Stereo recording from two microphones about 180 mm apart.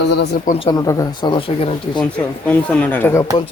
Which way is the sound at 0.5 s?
25° left (ahead or behind).